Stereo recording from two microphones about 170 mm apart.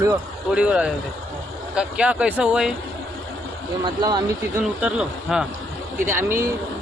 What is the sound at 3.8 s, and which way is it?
Speech, 25° right (ahead or behind).